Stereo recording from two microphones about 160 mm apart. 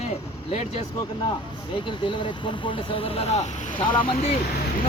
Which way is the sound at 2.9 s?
40° left (ahead or behind).